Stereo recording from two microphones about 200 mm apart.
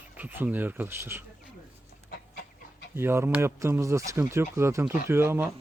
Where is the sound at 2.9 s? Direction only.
15° right (ahead or behind).